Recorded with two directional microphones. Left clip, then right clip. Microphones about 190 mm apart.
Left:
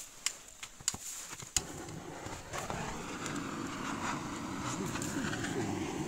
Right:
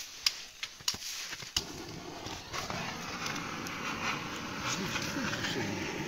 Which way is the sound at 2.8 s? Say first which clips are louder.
Right 3 dB; 35° left (ahead or behind).